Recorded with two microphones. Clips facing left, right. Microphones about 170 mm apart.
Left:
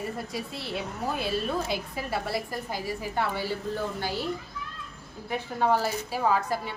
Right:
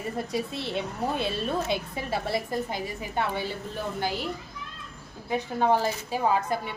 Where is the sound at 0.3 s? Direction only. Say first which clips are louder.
Right 4 dB; 25° right (ahead or behind).